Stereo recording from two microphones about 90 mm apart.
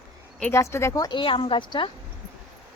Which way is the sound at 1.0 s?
65° left (ahead or behind).